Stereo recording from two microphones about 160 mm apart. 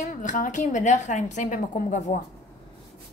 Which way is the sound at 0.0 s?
50° left (ahead or behind).